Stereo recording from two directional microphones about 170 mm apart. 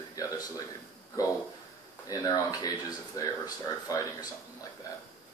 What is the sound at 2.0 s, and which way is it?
Speech, 20° left (ahead or behind).